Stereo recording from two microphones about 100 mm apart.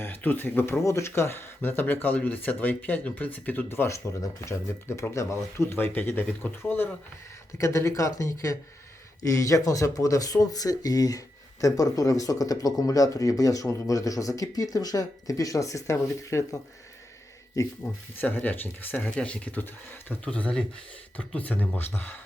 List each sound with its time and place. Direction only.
0.0 s speech: 20° left (ahead or behind)
7.6 s speech: 30° left (ahead or behind)
17.6 s speech: 30° left (ahead or behind)
18.2 s speech: 20° left (ahead or behind)